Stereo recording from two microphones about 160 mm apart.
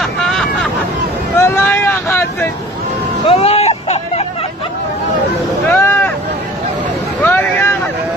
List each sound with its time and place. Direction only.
0.0 s hubbub: centre (ahead or behind)
1.3 s boat: 15° left (ahead or behind)
3.3 s vehicle: 40° left (ahead or behind)
5.7 s boat: 10° left (ahead or behind)
7.2 s vehicle: 15° left (ahead or behind)